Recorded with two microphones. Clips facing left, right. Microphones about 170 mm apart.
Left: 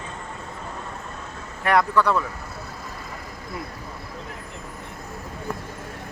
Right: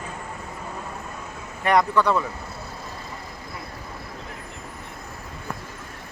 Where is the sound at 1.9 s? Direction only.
15° right (ahead or behind).